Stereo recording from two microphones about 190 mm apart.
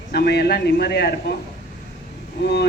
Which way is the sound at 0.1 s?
60° left (ahead or behind).